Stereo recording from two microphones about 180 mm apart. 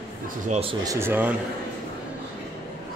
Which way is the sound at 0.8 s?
15° right (ahead or behind).